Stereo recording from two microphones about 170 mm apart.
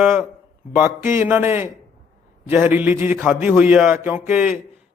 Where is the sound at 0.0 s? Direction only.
5° right (ahead or behind).